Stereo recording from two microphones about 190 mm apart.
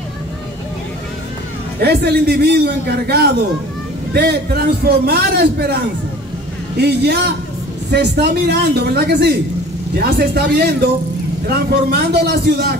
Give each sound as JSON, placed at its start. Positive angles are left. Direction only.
{"t": 1.8, "sound": "a man's voice", "side_deg": -60}
{"t": 6.8, "sound": "a man's voice", "side_deg": -60}